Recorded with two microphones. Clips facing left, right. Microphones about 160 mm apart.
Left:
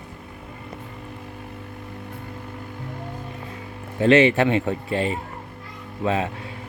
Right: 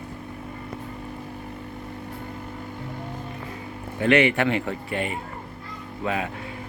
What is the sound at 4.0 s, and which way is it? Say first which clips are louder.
Speech: left 4 dB; 25° left (ahead or behind).